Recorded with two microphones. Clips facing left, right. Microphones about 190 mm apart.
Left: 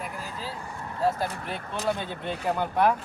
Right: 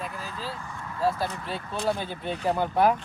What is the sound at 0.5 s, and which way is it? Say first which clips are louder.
Vehicle: left 1 dB; 35° left (ahead or behind).